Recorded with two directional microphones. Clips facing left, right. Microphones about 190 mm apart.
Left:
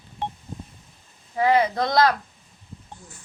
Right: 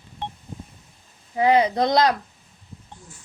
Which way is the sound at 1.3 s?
20° right (ahead or behind).